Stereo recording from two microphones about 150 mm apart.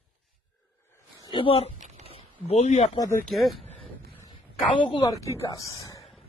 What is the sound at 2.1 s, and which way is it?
Speech, 45° left (ahead or behind).